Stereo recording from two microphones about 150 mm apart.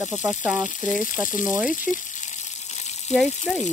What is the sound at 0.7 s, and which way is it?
Speech, 60° left (ahead or behind).